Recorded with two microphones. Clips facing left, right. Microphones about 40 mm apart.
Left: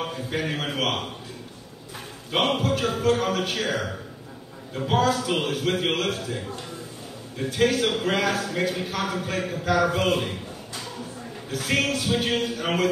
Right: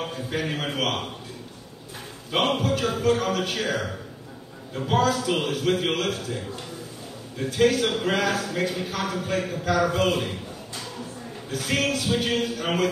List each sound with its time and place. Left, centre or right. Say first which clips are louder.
0.0 s a man's voice: even; centre
2.3 s a man's voice: even; centre
11.5 s a man's voice: left 1 dB; centre